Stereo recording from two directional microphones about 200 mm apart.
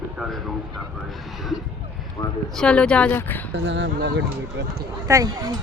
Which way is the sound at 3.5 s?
65° right (ahead or behind).